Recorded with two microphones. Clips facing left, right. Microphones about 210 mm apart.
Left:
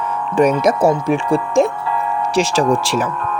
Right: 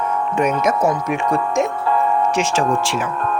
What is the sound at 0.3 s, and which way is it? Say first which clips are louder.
Speech: left 5 dB; 35° left (ahead or behind).